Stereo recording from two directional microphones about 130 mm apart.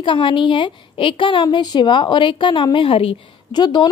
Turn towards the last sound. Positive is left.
turn(degrees=35)  # may be behind; listen again after turning